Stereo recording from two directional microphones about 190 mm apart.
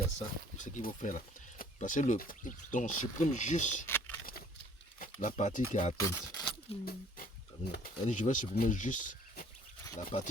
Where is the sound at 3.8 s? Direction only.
10° left (ahead or behind).